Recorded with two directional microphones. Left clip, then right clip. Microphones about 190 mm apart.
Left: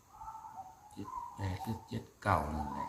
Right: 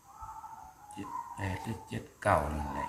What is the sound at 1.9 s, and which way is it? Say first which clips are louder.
Speech: right 5 dB; 5° left (ahead or behind).